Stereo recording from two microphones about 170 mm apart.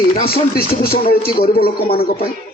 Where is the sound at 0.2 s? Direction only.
60° left (ahead or behind).